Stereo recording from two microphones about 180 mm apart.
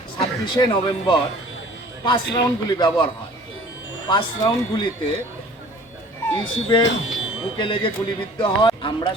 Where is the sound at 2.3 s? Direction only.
25° left (ahead or behind).